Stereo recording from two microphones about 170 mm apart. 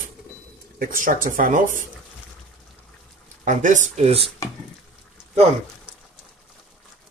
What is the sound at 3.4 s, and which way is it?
Speech, 45° right (ahead or behind).